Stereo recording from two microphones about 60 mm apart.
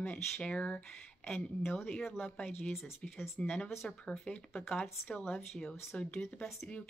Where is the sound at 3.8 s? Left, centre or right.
Centre.